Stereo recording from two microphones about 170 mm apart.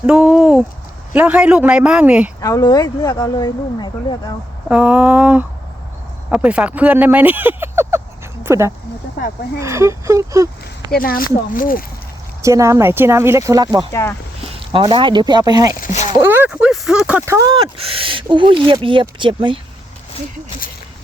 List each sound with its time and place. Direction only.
0.0 s speech: 5° right (ahead or behind)
2.4 s speech: 20° left (ahead or behind)
4.7 s speech: 5° right (ahead or behind)
10.9 s speech: 60° left (ahead or behind)
12.4 s speech: 15° right (ahead or behind)
13.9 s speech: 15° left (ahead or behind)
14.4 s speech: 30° right (ahead or behind)
15.8 s a sound: 45° left (ahead or behind)
16.1 s speech: 15° right (ahead or behind)
17.7 s speech: 35° right (ahead or behind)